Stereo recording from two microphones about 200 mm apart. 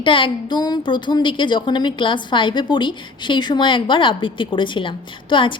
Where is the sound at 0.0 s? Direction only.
25° left (ahead or behind).